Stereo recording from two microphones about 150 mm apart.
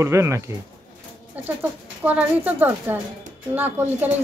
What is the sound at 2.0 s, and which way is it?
Speech, 10° right (ahead or behind).